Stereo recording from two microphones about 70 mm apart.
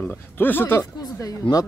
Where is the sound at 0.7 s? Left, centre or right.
Left.